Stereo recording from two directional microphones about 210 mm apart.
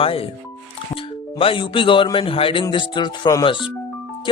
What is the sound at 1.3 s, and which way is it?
Speech, 25° left (ahead or behind).